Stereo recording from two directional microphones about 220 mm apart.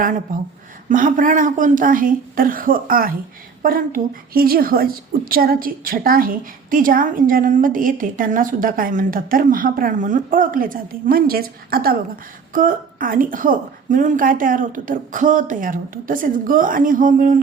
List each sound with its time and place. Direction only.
0.9 s a woman's voice: 35° right (ahead or behind)